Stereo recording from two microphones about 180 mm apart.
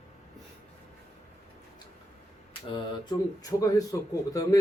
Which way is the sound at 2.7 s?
20° left (ahead or behind).